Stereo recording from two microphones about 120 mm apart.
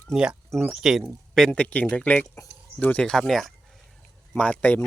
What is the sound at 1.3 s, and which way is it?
Speech, 5° left (ahead or behind).